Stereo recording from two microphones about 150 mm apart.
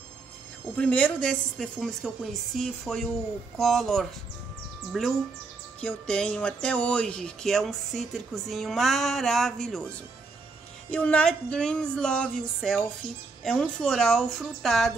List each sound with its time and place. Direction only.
0.7 s a woman's voice: 10° left (ahead or behind)